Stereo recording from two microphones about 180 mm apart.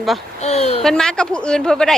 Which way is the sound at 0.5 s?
35° left (ahead or behind).